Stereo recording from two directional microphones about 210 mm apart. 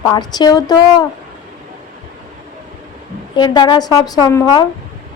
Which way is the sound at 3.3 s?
20° left (ahead or behind).